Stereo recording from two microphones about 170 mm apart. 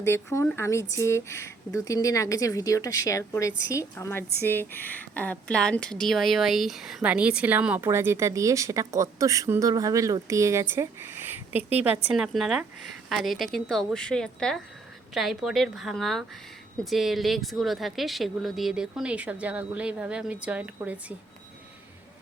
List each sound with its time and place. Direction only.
0.0 s speech: 15° left (ahead or behind); by 21.0 s 10° right (ahead or behind)